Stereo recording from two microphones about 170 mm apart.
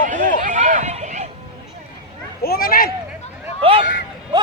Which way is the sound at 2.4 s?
60° left (ahead or behind).